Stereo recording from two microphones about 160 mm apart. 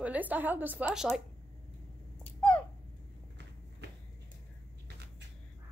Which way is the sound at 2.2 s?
10° left (ahead or behind).